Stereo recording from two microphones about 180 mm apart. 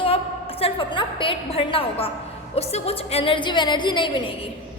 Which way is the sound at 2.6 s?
35° left (ahead or behind).